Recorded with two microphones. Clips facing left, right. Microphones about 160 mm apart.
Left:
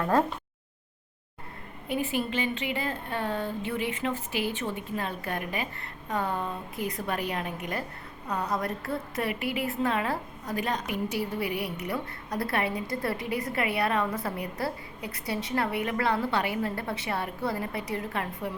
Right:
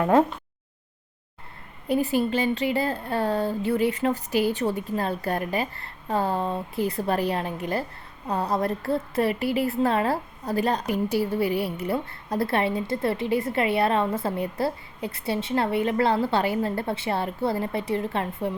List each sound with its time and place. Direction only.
1.9 s a woman's voice: 35° right (ahead or behind)